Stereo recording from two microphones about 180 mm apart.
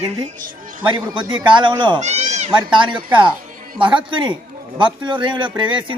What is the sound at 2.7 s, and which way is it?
A man's voice, 25° right (ahead or behind).